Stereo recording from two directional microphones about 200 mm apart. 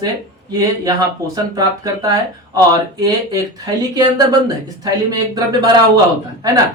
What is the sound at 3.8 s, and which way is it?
Speech, 20° right (ahead or behind).